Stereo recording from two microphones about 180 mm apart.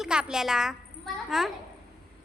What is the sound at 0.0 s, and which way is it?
A child's voice, 5° right (ahead or behind).